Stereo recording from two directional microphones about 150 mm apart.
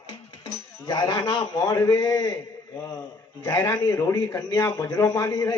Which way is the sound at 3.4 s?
20° left (ahead or behind).